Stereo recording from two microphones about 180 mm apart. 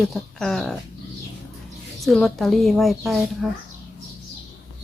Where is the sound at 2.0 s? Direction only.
Centre (ahead or behind).